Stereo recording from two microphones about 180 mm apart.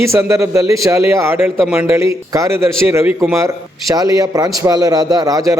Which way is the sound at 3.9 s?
20° right (ahead or behind).